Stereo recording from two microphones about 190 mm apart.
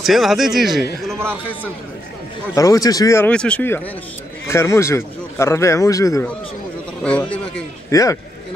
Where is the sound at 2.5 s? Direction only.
20° left (ahead or behind).